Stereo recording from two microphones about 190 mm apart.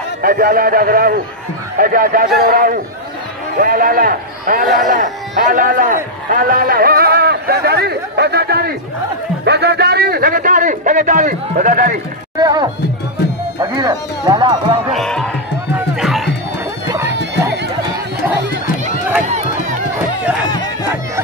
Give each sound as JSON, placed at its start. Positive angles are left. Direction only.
{"t": 0.2, "sound": "a man's voice", "side_deg": -50}
{"t": 12.4, "sound": "speech", "side_deg": -20}
{"t": 14.9, "sound": "speech", "side_deg": 5}
{"t": 16.0, "sound": "music", "side_deg": 0}
{"t": 17.1, "sound": "run", "side_deg": -65}